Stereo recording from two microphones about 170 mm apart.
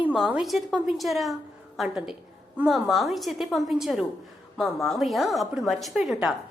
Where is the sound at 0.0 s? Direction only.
5° right (ahead or behind).